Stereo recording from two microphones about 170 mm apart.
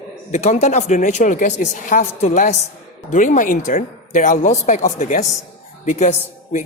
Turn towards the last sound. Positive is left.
turn(degrees=45)  # may be behind; listen again after turning